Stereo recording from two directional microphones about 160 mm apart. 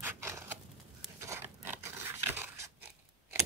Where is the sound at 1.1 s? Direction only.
15° right (ahead or behind).